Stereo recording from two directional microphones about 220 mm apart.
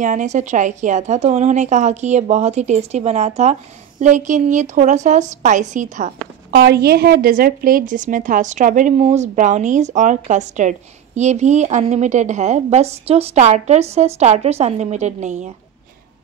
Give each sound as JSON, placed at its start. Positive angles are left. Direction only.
{"t": 0.0, "sound": "a woman's voice", "side_deg": -35}
{"t": 6.5, "sound": "a woman's voice", "side_deg": -45}